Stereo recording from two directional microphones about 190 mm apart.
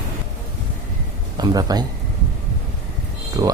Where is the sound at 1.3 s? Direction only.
20° right (ahead or behind).